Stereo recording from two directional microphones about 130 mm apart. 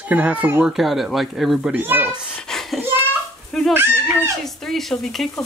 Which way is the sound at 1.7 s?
15° right (ahead or behind).